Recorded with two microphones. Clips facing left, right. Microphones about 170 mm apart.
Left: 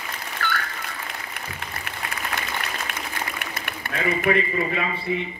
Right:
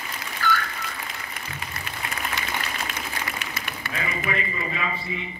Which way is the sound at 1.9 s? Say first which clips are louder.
Even; 60° left (ahead or behind).